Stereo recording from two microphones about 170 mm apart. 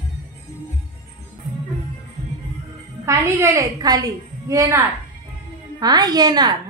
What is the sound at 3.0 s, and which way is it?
A woman's voice, 15° right (ahead or behind).